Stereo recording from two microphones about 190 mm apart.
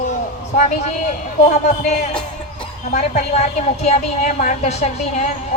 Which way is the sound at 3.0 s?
40° left (ahead or behind).